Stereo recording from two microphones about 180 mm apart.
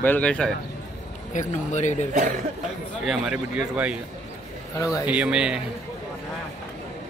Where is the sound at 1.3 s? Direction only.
40° left (ahead or behind).